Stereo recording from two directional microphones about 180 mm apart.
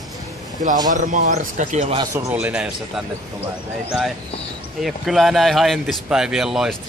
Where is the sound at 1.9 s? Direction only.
20° right (ahead or behind).